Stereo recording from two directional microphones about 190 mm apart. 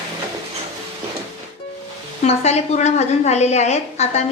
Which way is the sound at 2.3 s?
35° left (ahead or behind).